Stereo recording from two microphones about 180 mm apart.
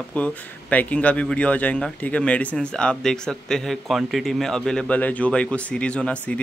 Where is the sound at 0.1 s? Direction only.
10° left (ahead or behind).